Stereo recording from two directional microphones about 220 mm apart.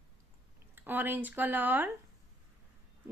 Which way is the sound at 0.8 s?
10° right (ahead or behind).